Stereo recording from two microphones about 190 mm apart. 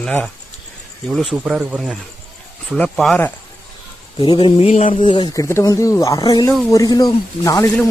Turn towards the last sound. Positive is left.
turn(degrees=20)  # may be behind; listen again after turning